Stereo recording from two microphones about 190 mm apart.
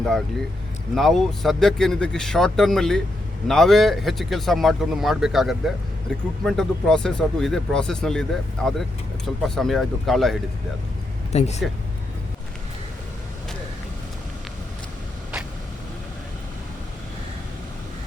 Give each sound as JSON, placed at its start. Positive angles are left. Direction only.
{"t": 0.9, "sound": "speech", "side_deg": 0}
{"t": 11.3, "sound": "speech", "side_deg": 35}